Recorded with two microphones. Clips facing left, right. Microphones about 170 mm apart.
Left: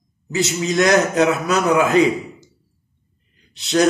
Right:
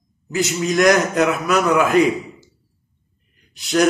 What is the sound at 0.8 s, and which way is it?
A man's voice, 30° left (ahead or behind).